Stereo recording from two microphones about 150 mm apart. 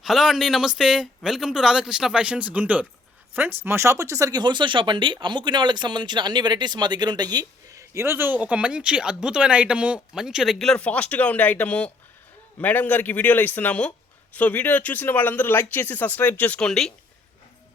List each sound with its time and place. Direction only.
0.0 s speech: centre (ahead or behind)